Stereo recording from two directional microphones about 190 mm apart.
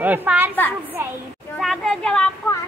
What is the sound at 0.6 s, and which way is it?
Speech, 10° left (ahead or behind).